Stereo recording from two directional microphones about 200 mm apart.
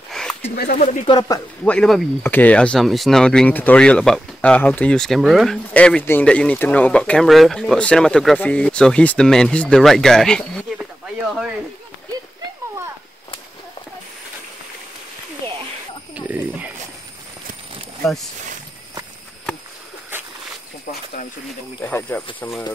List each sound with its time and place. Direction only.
0.1 s a sound: 5° left (ahead or behind)
0.6 s speech: 45° left (ahead or behind)
1.0 s speech: 20° left (ahead or behind)
1.6 s speech: 5° left (ahead or behind)
16.2 s speech: 10° right (ahead or behind)
21.8 s speech: 10° left (ahead or behind)